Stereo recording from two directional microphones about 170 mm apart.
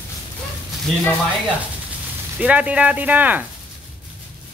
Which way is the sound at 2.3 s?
10° right (ahead or behind).